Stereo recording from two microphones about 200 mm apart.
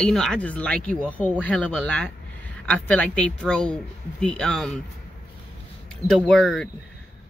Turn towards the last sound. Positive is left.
turn(degrees=5)  # may be behind; listen again after turning